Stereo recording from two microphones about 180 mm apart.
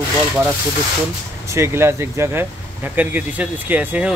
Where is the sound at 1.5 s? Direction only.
15° right (ahead or behind).